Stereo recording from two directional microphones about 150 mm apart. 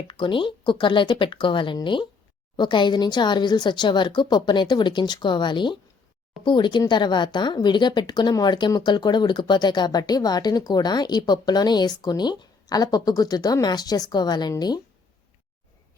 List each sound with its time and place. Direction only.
0.1 s speech: 35° left (ahead or behind)